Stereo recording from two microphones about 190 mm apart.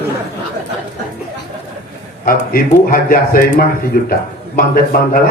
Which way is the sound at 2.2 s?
50° left (ahead or behind).